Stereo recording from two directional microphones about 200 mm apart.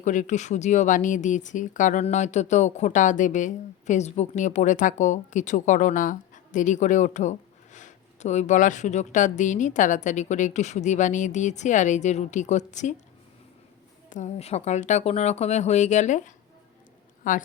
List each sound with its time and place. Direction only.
0.0 s speech: 40° left (ahead or behind)
14.1 s speech: 35° left (ahead or behind)